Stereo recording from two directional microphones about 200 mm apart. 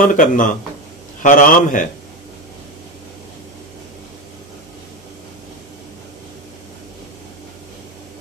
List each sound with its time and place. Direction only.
0.0 s a man's voice: 40° left (ahead or behind)